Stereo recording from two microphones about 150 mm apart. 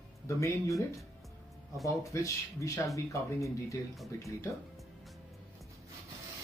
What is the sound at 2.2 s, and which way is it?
Speech, 20° left (ahead or behind).